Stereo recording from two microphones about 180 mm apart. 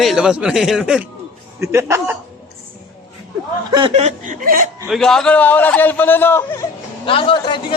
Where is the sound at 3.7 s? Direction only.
30° right (ahead or behind).